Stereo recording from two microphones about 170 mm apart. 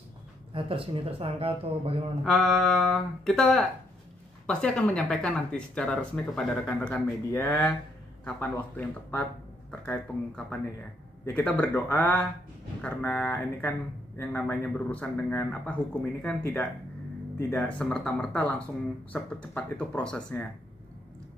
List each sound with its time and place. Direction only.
0.5 s speech: 30° right (ahead or behind)
2.2 s speech: centre (ahead or behind)
7.2 s speech: 20° left (ahead or behind)
8.3 s speech: 10° left (ahead or behind)